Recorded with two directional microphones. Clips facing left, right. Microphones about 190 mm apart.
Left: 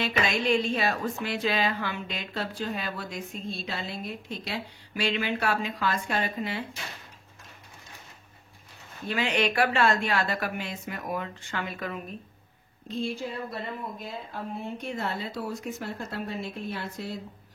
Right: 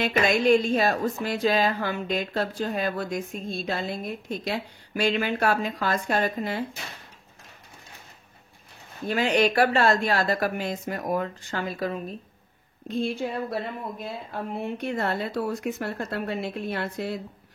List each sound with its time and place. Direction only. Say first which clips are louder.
0.0 s speech: right 5 dB; 50° right (ahead or behind)
9.0 s speech: right 5 dB; 40° right (ahead or behind)
12.8 s speech: right 4 dB; 60° right (ahead or behind)